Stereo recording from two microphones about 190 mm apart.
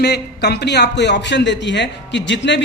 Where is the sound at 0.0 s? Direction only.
60° left (ahead or behind).